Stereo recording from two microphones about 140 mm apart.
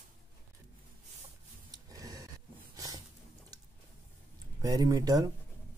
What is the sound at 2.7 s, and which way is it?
Dog, 25° right (ahead or behind).